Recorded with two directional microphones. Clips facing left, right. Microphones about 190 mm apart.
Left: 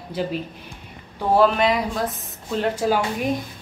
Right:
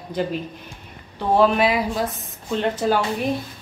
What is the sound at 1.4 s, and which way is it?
Speech, 5° right (ahead or behind).